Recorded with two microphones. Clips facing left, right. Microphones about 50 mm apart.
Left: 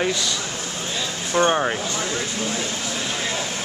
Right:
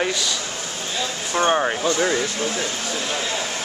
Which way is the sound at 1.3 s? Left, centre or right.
Centre.